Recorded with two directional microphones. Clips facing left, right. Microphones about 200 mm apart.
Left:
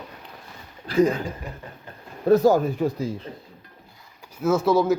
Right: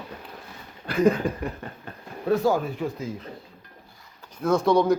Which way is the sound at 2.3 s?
40° left (ahead or behind).